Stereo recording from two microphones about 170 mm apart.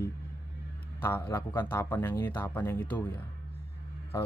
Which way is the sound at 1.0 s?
15° left (ahead or behind).